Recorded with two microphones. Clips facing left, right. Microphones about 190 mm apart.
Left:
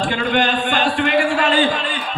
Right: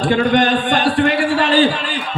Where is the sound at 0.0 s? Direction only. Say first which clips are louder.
Right 4 dB; 40° right (ahead or behind).